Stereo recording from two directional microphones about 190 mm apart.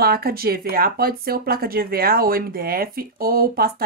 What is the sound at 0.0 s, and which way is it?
Speech, 55° right (ahead or behind).